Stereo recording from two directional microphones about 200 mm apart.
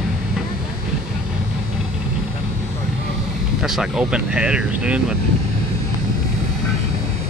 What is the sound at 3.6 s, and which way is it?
Speech, centre (ahead or behind).